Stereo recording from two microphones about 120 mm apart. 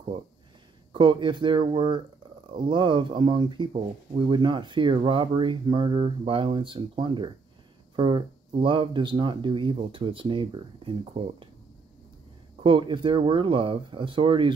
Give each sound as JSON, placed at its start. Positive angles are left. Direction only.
{"t": 0.9, "sound": "speech", "side_deg": -40}
{"t": 12.6, "sound": "speech", "side_deg": -45}